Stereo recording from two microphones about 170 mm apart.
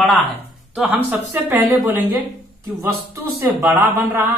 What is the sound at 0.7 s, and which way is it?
Speech, 5° right (ahead or behind).